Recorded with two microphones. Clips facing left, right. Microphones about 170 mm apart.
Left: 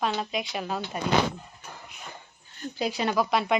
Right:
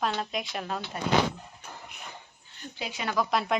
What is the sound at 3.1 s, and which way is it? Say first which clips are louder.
Speech: even; centre (ahead or behind).